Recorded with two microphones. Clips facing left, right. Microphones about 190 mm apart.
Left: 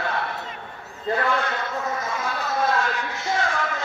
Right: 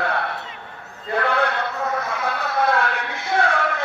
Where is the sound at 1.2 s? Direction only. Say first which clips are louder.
Right 6 dB; 65° right (ahead or behind).